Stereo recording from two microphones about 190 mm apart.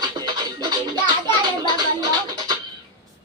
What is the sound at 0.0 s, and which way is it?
Music, 20° right (ahead or behind).